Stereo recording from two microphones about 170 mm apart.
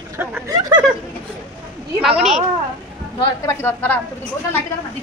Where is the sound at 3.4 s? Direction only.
10° left (ahead or behind).